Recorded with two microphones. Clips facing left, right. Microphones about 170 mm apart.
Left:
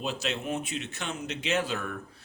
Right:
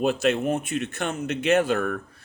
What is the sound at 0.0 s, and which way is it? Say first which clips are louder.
Speech: right 10 dB; 55° right (ahead or behind).